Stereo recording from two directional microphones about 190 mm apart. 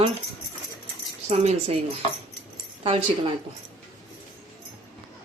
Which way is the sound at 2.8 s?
30° right (ahead or behind).